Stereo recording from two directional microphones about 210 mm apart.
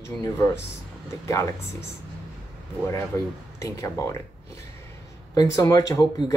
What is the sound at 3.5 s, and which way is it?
Speech, 15° left (ahead or behind).